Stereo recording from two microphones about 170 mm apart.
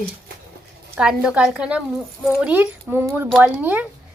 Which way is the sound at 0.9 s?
5° right (ahead or behind).